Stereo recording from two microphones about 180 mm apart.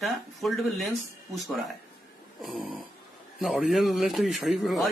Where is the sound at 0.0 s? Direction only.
Centre (ahead or behind).